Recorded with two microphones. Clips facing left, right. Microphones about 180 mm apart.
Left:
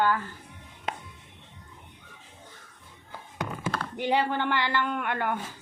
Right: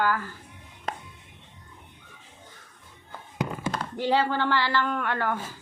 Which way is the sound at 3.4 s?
20° right (ahead or behind).